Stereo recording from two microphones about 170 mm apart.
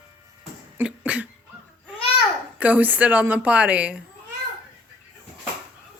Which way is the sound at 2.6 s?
10° right (ahead or behind).